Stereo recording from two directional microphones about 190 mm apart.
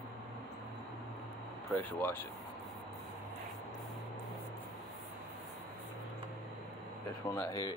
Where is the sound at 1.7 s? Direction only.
10° left (ahead or behind).